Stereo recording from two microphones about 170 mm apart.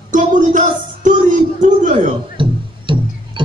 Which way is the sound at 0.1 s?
50° right (ahead or behind).